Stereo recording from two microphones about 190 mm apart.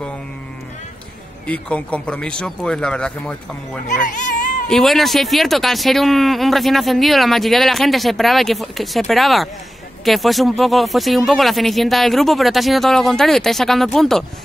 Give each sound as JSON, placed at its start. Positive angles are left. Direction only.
{"t": 1.5, "sound": "speech", "side_deg": 5}
{"t": 3.8, "sound": "cat", "side_deg": 40}
{"t": 4.6, "sound": "speech", "side_deg": 0}